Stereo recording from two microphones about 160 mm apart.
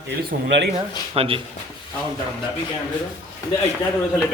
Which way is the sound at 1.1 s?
35° right (ahead or behind).